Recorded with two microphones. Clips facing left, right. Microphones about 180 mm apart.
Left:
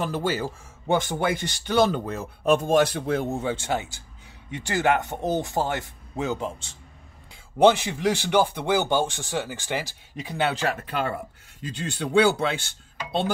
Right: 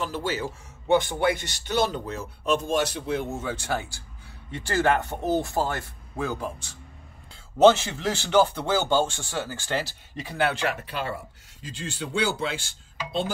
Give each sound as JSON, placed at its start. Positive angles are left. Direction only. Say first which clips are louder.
{"t": 0.0, "sound": "speech", "louder": "left 3 dB", "side_deg": 50}
{"t": 3.3, "sound": "speech", "louder": "left 3 dB", "side_deg": 30}
{"t": 10.6, "sound": "speech", "louder": "left 2 dB", "side_deg": 45}